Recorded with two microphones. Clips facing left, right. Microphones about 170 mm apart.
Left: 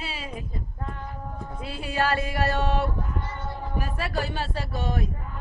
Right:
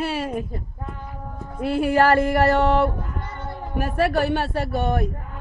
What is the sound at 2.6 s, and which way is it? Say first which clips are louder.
A man's voice: right 7 dB; 55° right (ahead or behind).